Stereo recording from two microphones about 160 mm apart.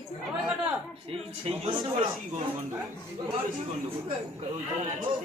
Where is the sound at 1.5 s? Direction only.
35° right (ahead or behind).